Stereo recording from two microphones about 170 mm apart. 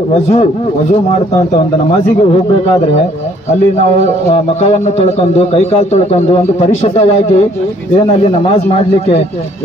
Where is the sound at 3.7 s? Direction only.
40° left (ahead or behind).